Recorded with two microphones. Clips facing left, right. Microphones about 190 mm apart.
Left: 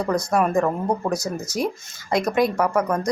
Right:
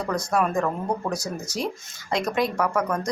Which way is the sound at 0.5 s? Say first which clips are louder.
Left 4 dB; 20° left (ahead or behind).